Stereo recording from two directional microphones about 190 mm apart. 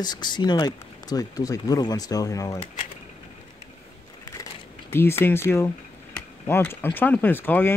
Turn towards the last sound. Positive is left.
turn(degrees=10)  # may be behind; listen again after turning